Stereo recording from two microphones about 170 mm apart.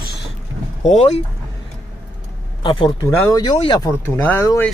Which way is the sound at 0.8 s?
40° left (ahead or behind).